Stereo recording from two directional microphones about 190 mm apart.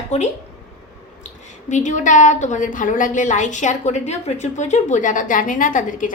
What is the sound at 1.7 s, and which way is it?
A woman's voice, 40° left (ahead or behind).